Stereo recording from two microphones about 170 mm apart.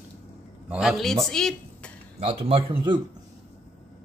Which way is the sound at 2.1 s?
35° right (ahead or behind).